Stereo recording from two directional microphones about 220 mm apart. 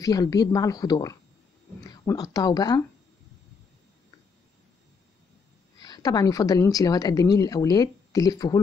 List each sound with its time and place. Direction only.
0.0 s a woman's voice: 15° left (ahead or behind)
5.8 s a woman's voice: 15° left (ahead or behind)